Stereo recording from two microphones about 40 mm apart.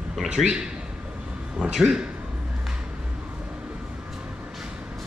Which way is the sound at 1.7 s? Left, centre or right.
Centre.